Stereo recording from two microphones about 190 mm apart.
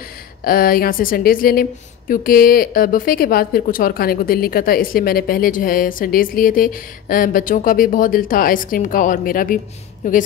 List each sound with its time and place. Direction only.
0.4 s a woman's voice: 50° left (ahead or behind)